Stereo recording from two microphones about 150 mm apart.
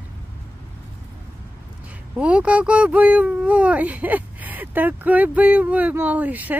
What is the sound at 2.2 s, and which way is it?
A woman's voice, 10° right (ahead or behind).